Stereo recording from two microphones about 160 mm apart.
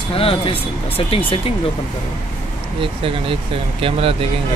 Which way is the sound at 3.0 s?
35° right (ahead or behind).